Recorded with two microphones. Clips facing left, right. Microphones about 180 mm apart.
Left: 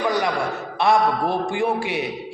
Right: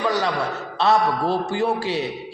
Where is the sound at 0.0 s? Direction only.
15° left (ahead or behind).